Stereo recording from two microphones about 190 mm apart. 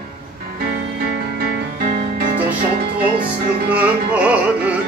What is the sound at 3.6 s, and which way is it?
Music, 5° right (ahead or behind).